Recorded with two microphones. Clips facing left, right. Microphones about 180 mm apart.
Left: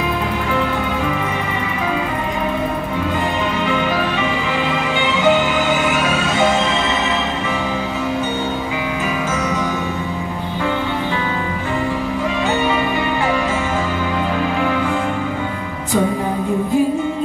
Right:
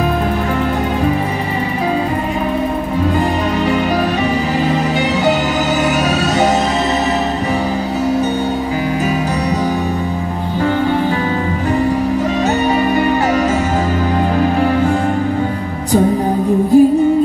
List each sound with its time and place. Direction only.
14.4 s music: 40° right (ahead or behind)
16.7 s music: 40° right (ahead or behind)